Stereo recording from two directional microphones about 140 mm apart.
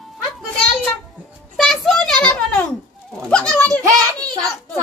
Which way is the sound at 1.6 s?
Centre (ahead or behind).